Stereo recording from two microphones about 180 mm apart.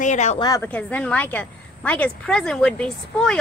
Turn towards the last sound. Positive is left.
turn(degrees=5)  # may be behind; listen again after turning